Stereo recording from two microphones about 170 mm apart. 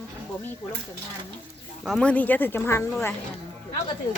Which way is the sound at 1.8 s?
Centre (ahead or behind).